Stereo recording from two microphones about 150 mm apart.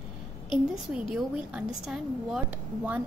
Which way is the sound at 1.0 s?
5° right (ahead or behind).